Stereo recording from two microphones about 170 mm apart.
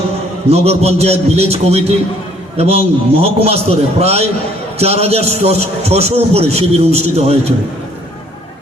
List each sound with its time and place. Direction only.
0.5 s a man's voice: 40° right (ahead or behind)